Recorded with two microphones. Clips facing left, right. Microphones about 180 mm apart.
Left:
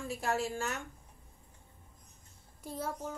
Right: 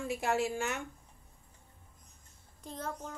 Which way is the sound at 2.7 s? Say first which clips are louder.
Left 2 dB; 10° left (ahead or behind).